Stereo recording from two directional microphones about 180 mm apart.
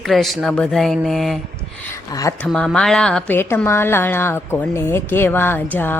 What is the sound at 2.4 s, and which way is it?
A woman's voice, 5° left (ahead or behind).